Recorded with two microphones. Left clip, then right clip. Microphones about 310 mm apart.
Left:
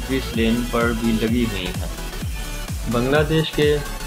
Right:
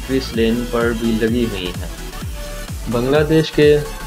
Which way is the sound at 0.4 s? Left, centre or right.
Centre.